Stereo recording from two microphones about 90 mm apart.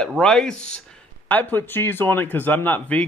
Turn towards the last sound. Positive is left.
turn(degrees=15)  # may be behind; listen again after turning